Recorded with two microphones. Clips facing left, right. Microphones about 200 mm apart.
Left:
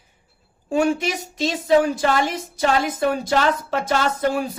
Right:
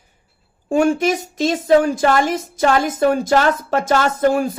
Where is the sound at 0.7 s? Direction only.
45° right (ahead or behind).